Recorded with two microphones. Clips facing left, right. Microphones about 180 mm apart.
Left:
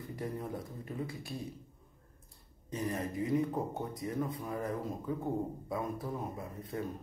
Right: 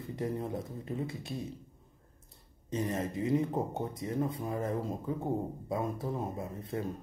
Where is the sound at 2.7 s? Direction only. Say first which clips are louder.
Right 3 dB; 25° right (ahead or behind).